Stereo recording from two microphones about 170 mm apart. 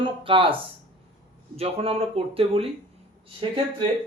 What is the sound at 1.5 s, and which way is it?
Speech, 35° right (ahead or behind).